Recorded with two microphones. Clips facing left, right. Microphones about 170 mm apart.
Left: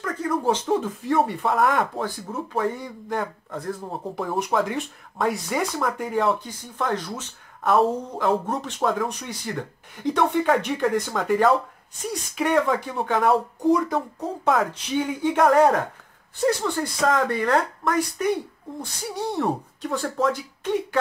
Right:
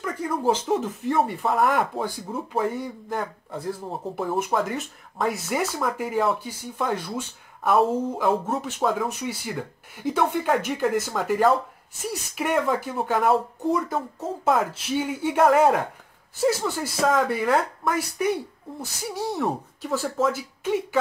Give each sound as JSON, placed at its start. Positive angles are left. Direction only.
{"t": 0.0, "sound": "speech", "side_deg": -10}